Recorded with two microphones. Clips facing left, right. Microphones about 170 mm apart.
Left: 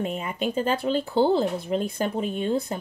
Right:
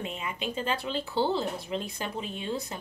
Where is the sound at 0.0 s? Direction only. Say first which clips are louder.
Left 7 dB; 45° left (ahead or behind).